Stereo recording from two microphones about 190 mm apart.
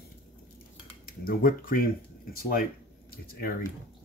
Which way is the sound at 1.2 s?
50° left (ahead or behind).